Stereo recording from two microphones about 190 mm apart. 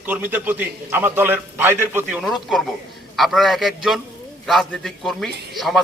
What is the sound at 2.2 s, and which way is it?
A man's voice, centre (ahead or behind).